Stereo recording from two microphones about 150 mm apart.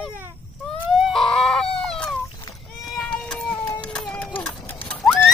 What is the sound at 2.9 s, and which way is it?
Run, 5° left (ahead or behind).